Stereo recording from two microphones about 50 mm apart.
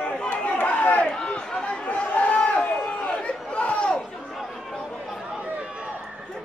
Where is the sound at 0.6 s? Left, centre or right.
Left.